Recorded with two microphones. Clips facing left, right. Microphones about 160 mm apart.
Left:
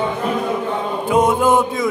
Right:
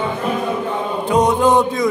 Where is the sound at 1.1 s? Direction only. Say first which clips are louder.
Right 1 dB; 5° left (ahead or behind).